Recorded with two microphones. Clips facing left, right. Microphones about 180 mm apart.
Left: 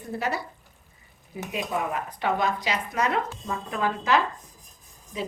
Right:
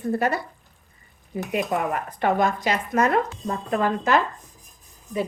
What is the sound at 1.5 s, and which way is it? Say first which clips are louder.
Speech: right 4 dB; 55° right (ahead or behind).